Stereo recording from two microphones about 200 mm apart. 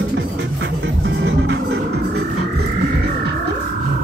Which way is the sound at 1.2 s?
60° right (ahead or behind).